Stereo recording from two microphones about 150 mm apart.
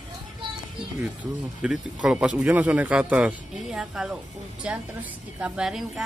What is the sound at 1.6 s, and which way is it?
A woman's voice, 5° right (ahead or behind).